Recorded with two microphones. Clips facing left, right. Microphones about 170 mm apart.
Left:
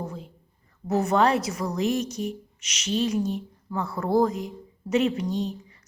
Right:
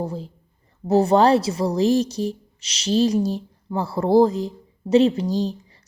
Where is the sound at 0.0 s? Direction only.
30° right (ahead or behind).